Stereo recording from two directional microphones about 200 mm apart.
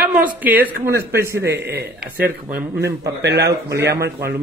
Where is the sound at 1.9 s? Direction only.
50° right (ahead or behind).